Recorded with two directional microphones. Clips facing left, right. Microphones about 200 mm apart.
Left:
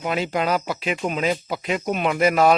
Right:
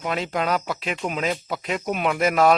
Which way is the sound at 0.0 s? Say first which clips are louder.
Left 2 dB; 5° left (ahead or behind).